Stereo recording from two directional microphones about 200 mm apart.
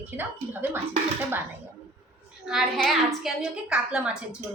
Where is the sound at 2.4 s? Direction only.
Centre (ahead or behind).